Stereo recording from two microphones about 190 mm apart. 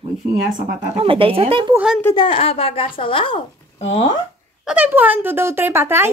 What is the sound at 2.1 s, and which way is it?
A woman's voice, 30° left (ahead or behind).